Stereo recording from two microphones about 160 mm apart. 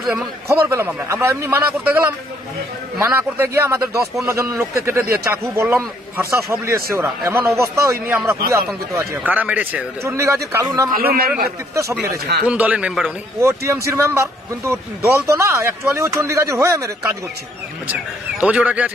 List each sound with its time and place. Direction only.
0.0 s a man's voice: centre (ahead or behind)
0.5 s speech: 15° right (ahead or behind)
5.7 s a man's voice: 5° right (ahead or behind)
6.3 s speech: 15° right (ahead or behind)
10.9 s a man's voice: 70° right (ahead or behind)
11.7 s speech: 15° right (ahead or behind)
13.4 s speech: 20° right (ahead or behind)
18.4 s speech: 5° right (ahead or behind)